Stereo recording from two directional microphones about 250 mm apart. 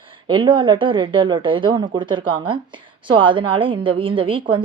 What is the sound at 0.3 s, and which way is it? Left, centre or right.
A woman's voice, centre.